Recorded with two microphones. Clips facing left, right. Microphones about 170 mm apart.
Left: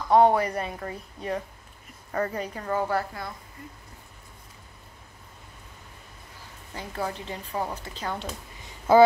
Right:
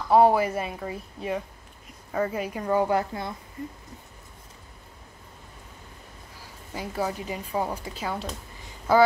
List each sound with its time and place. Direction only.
0.1 s a woman's voice: 5° right (ahead or behind); by 3.3 s 20° right (ahead or behind)
6.7 s speech: 10° right (ahead or behind)
8.9 s speech: 25° left (ahead or behind)